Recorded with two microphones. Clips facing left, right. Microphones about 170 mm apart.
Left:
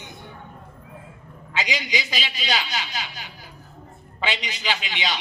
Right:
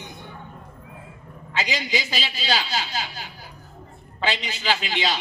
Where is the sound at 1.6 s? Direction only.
35° right (ahead or behind).